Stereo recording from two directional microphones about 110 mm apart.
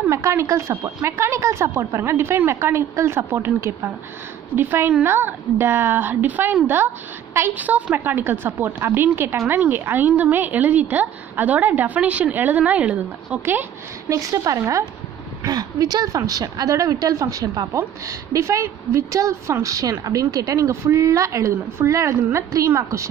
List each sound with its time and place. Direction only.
0.1 s a woman's voice: 25° right (ahead or behind)
14.0 s a woman's voice: 30° right (ahead or behind)